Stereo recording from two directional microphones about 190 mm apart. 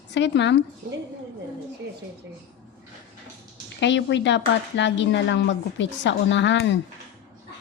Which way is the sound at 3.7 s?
70° left (ahead or behind).